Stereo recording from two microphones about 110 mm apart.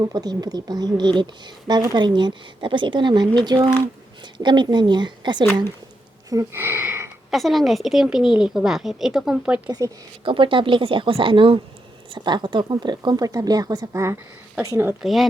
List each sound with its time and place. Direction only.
0.0 s a woman's voice: 35° right (ahead or behind)
6.3 s speech: 20° right (ahead or behind)
7.3 s a woman's voice: centre (ahead or behind)
9.6 s a woman's voice: 35° right (ahead or behind)
10.2 s a woman's voice: 50° right (ahead or behind); by 14.9 s 25° right (ahead or behind)
15.0 s a woman's voice: centre (ahead or behind)